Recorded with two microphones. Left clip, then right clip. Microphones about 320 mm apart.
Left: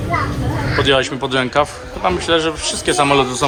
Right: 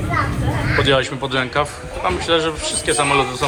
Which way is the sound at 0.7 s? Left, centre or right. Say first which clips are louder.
Left 2 dB; centre.